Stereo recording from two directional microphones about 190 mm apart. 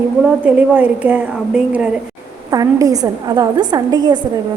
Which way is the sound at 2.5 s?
20° right (ahead or behind).